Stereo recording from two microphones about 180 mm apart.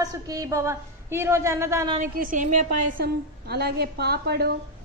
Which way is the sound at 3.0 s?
65° right (ahead or behind).